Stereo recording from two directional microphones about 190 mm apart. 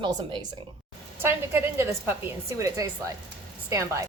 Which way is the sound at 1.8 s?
10° right (ahead or behind).